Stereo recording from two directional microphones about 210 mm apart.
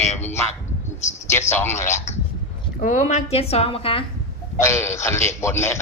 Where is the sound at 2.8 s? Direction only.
35° left (ahead or behind).